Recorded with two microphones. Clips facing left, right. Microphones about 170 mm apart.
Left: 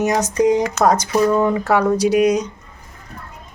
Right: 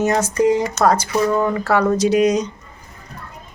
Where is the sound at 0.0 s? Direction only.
15° left (ahead or behind).